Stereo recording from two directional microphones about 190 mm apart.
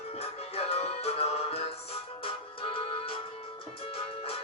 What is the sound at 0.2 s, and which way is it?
Music, 35° left (ahead or behind).